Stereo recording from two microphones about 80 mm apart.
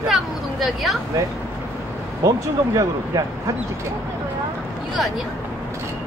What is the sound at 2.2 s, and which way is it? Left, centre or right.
Speech, right.